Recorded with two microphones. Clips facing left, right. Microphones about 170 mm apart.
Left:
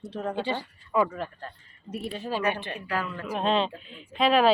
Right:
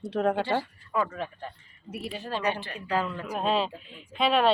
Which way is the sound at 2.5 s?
20° left (ahead or behind).